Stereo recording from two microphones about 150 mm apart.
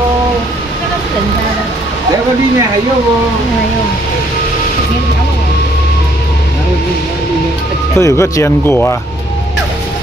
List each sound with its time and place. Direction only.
8.0 s speech: 20° left (ahead or behind)